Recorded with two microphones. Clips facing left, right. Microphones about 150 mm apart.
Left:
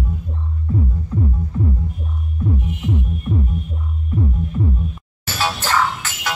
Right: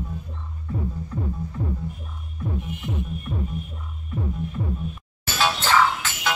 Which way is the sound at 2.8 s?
20° left (ahead or behind).